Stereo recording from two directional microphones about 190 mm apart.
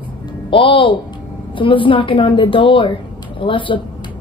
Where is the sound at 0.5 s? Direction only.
25° left (ahead or behind).